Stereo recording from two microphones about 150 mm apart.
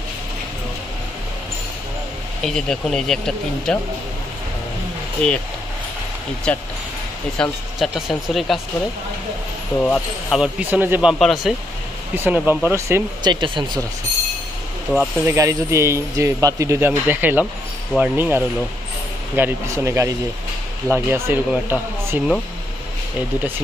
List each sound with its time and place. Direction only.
2.4 s speech: 5° left (ahead or behind)
5.2 s speech: 5° left (ahead or behind)
6.5 s speech: 10° left (ahead or behind)
9.8 s speech: 5° left (ahead or behind)
12.2 s speech: 10° right (ahead or behind)
13.3 s speech: 30° right (ahead or behind)
14.9 s speech: 10° right (ahead or behind)